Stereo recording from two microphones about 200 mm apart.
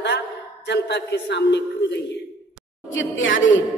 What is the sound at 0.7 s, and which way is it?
A woman's voice, 60° left (ahead or behind).